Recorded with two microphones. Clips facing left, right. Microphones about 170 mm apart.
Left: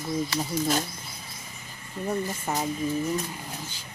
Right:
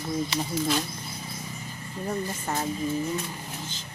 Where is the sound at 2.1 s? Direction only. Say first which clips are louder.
Left 2 dB; 5° left (ahead or behind).